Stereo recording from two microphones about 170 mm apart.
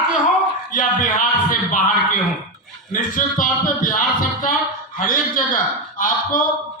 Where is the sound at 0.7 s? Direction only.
50° left (ahead or behind).